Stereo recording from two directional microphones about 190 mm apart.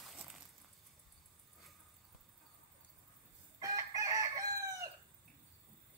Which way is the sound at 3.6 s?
15° right (ahead or behind).